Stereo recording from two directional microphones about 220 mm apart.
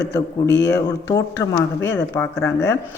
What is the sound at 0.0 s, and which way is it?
Speech, 50° left (ahead or behind).